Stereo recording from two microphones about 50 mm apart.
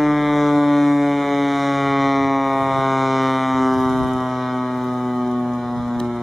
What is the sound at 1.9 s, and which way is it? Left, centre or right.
Music, centre.